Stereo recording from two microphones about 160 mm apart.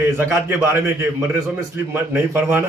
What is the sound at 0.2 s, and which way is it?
A man's voice, 15° right (ahead or behind).